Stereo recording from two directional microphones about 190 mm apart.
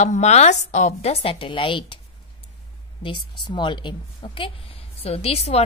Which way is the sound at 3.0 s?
25° left (ahead or behind).